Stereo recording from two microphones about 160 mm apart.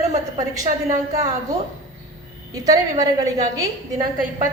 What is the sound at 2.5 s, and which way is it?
A woman's voice, 20° right (ahead or behind).